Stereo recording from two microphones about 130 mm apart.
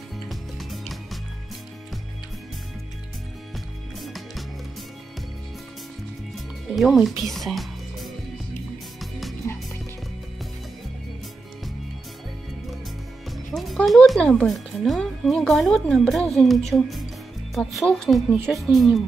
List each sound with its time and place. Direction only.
0.3 s music: centre (ahead or behind)
3.5 s music: centre (ahead or behind)
6.3 s music: centre (ahead or behind)
9.5 s music: 20° left (ahead or behind)
13.5 s speech: centre (ahead or behind)